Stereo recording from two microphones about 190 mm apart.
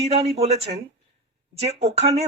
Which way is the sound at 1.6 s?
35° right (ahead or behind).